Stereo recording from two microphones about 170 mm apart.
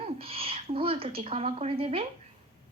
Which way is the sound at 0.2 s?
35° right (ahead or behind).